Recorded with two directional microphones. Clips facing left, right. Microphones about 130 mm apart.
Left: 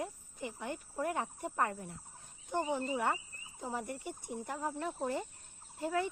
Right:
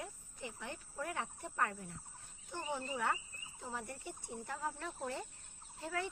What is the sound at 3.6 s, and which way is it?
Speech, 50° left (ahead or behind).